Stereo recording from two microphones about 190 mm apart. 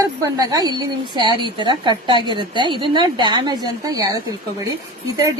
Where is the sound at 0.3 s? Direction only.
20° right (ahead or behind).